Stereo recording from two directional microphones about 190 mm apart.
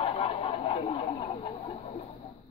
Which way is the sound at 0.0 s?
30° left (ahead or behind).